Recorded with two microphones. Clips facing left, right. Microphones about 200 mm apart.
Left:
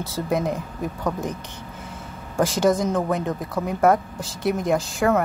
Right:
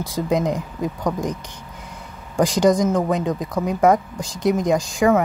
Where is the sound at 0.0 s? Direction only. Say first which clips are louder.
Right 3 dB; 15° right (ahead or behind).